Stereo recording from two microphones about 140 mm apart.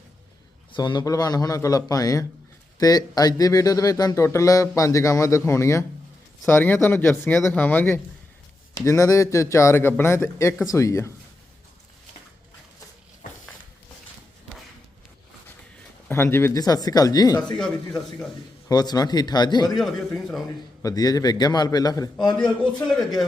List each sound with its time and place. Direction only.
0.7 s speech: 35° left (ahead or behind)
16.0 s speech: 15° left (ahead or behind)
17.4 s speech: 5° left (ahead or behind)
18.7 s speech: 30° left (ahead or behind)
19.7 s speech: 5° left (ahead or behind)
20.8 s speech: 25° left (ahead or behind)
22.4 s speech: 5° left (ahead or behind)